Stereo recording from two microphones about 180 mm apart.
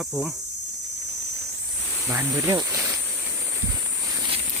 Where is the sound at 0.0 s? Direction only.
Centre (ahead or behind).